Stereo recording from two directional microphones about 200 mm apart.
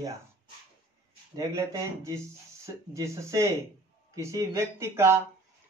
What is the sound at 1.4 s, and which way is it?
Speech, 15° right (ahead or behind).